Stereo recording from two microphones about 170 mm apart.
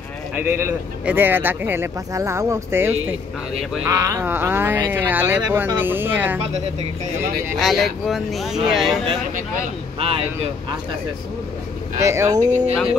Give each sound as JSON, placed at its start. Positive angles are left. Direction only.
{"t": 0.3, "sound": "speech", "side_deg": -10}
{"t": 7.5, "sound": "speech", "side_deg": 0}
{"t": 9.9, "sound": "speech", "side_deg": -35}
{"t": 12.0, "sound": "speech", "side_deg": -15}
{"t": 12.4, "sound": "speech", "side_deg": -45}